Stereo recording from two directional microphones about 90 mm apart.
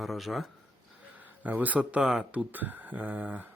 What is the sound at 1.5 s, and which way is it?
Speech, 20° right (ahead or behind).